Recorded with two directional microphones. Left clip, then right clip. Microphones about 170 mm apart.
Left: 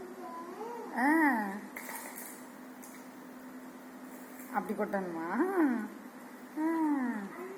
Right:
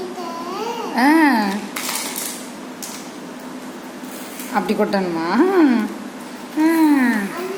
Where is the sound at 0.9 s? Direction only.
15° right (ahead or behind).